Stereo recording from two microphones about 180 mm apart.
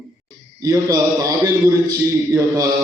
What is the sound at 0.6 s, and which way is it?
A man's voice, 20° right (ahead or behind).